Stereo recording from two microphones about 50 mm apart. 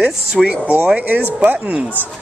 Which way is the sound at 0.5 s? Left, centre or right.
Right.